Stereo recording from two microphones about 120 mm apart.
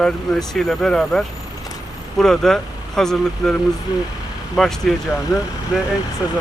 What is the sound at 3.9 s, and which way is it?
Speech, 35° left (ahead or behind).